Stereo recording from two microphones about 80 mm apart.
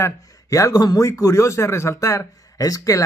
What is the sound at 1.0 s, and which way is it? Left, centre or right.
A man's voice, left.